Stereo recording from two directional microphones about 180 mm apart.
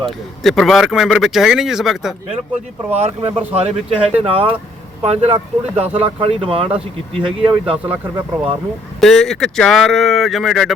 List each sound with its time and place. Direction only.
0.0 s a man's voice: centre (ahead or behind)
2.9 s speech: 35° right (ahead or behind)
9.0 s a man's voice: centre (ahead or behind)